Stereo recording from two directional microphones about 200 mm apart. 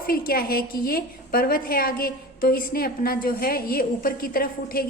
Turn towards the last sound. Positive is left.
turn(degrees=45)  # may be behind; listen again after turning